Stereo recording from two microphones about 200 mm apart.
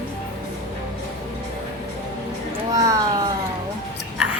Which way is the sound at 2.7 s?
15° right (ahead or behind).